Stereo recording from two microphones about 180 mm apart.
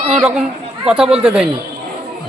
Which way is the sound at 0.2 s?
5° right (ahead or behind).